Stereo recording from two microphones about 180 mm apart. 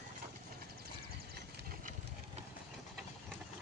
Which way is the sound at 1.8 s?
45° right (ahead or behind).